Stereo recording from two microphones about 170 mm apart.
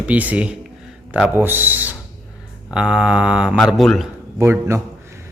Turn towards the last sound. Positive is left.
turn(degrees=-15)  # may be behind; listen again after turning